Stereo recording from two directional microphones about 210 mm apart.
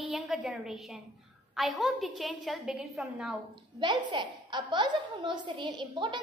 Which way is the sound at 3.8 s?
20° right (ahead or behind).